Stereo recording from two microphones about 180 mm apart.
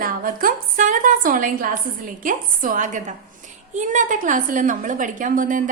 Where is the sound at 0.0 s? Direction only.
50° right (ahead or behind).